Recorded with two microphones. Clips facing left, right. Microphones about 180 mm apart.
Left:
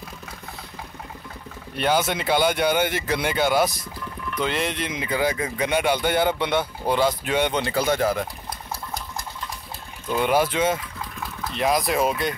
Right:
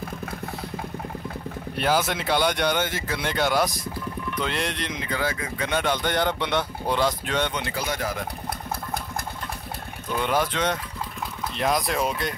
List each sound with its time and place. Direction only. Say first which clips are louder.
1.8 s speech: left 2 dB; centre (ahead or behind); by 3.3 s 15° left (ahead or behind)
3.3 s speech: left 1 dB; centre (ahead or behind)
7.5 s speech: left 7 dB; 30° left (ahead or behind)
10.2 s speech: left 4 dB; 10° left (ahead or behind)